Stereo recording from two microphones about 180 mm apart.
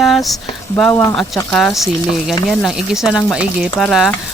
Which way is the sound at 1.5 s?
Centre (ahead or behind).